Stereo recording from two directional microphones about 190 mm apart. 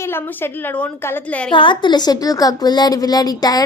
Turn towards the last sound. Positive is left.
turn(degrees=20)  # may be behind; listen again after turning